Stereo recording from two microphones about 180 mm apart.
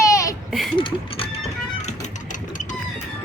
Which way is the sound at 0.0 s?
15° left (ahead or behind).